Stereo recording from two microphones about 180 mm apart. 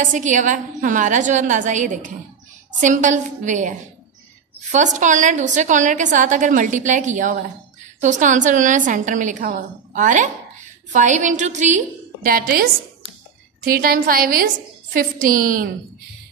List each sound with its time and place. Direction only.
0.0 s a woman's voice: 45° right (ahead or behind)
13.7 s a woman's voice: 50° right (ahead or behind)